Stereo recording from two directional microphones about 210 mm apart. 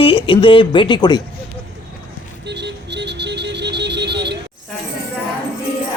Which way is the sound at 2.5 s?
55° right (ahead or behind).